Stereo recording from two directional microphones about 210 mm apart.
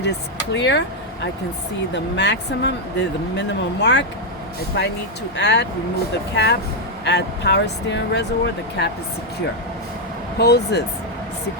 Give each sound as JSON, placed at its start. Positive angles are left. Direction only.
{"t": 0.5, "sound": "speech", "side_deg": 55}
{"t": 10.3, "sound": "speech", "side_deg": 50}